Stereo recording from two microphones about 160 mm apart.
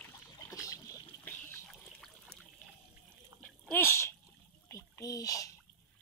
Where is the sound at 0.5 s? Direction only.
20° left (ahead or behind).